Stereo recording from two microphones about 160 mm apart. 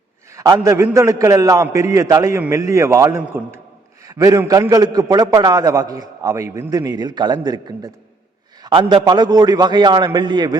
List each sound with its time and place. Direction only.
0.3 s a man's voice: 20° right (ahead or behind)